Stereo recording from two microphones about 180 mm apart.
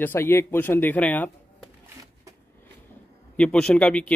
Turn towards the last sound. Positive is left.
turn(degrees=5)  # may be behind; listen again after turning